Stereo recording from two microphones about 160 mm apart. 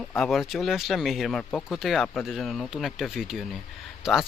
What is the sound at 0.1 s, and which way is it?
Speech, centre (ahead or behind).